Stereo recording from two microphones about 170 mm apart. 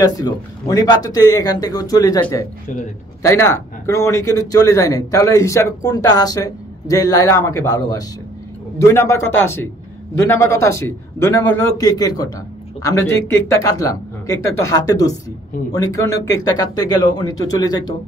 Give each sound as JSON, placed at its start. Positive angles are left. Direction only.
{"t": 0.0, "sound": "a man's voice", "side_deg": 20}
{"t": 13.3, "sound": "a man's voice", "side_deg": 20}